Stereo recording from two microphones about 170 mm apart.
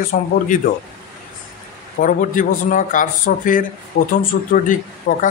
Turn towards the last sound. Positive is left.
turn(degrees=50)  # may be behind; listen again after turning